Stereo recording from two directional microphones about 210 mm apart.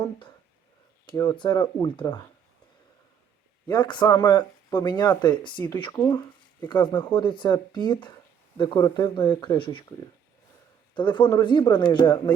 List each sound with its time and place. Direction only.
1.0 s speech: 20° left (ahead or behind)
3.7 s speech: 20° left (ahead or behind)
10.9 s speech: 20° left (ahead or behind)